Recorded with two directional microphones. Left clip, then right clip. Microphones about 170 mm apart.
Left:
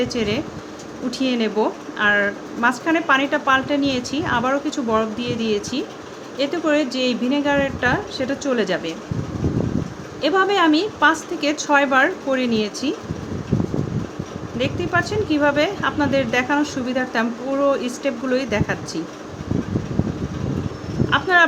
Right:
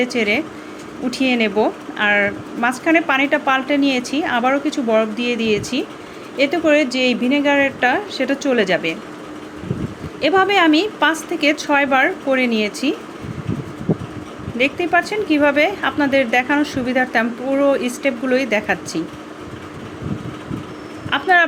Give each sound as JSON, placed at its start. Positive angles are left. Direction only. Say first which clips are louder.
{"t": 0.0, "sound": "speech", "louder": "right 4 dB", "side_deg": -5}
{"t": 10.2, "sound": "speech", "louder": "right 3 dB", "side_deg": -10}
{"t": 14.6, "sound": "speech", "louder": "right 5 dB", "side_deg": -10}
{"t": 21.1, "sound": "speech", "louder": "right 2 dB", "side_deg": -5}